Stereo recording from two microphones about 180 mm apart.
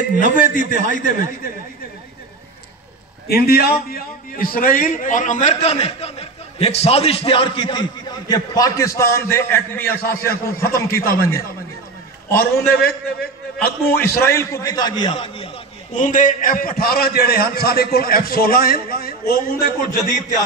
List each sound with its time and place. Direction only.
0.2 s a man's voice: 50° left (ahead or behind)
3.3 s a man's voice: 60° left (ahead or behind); by 11.1 s 15° left (ahead or behind)
12.7 s a man's voice: 60° left (ahead or behind)
14.2 s a man's voice: 15° left (ahead or behind); by 20.4 s 45° left (ahead or behind)